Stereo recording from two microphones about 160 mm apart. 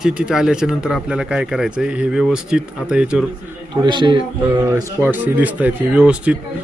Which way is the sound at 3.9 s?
30° right (ahead or behind).